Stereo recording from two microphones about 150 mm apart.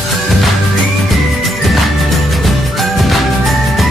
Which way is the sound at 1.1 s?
Centre (ahead or behind).